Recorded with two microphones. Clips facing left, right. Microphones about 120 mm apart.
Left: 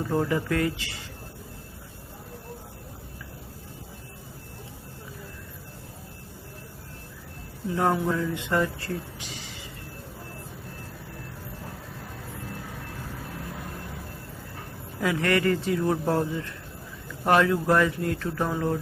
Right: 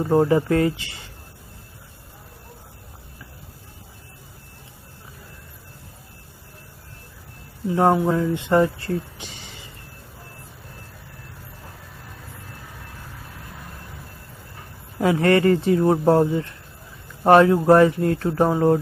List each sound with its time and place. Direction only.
0.0 s speech: 35° right (ahead or behind)
7.7 s speech: 30° right (ahead or behind)
15.0 s speech: 35° right (ahead or behind)